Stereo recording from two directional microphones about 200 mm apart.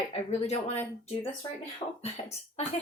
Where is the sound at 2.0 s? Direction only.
30° left (ahead or behind).